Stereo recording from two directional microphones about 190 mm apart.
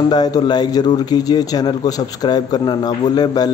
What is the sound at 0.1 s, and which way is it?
A man's voice, 20° left (ahead or behind).